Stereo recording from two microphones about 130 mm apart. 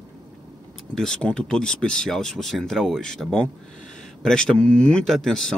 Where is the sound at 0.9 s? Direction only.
5° left (ahead or behind).